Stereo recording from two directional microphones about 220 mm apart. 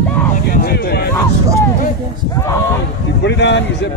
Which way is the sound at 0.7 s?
45° left (ahead or behind).